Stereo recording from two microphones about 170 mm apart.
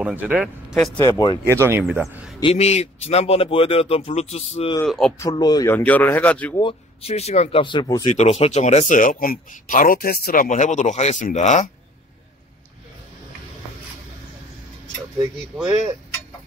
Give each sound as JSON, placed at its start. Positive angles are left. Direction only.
{"t": 0.0, "sound": "speech", "side_deg": -10}
{"t": 1.0, "sound": "speech", "side_deg": 20}
{"t": 1.5, "sound": "speech", "side_deg": -15}
{"t": 2.4, "sound": "speech", "side_deg": 40}
{"t": 4.8, "sound": "speech", "side_deg": 5}
{"t": 5.2, "sound": "speech", "side_deg": 25}
{"t": 6.5, "sound": "speech", "side_deg": 30}
{"t": 8.1, "sound": "speech", "side_deg": 40}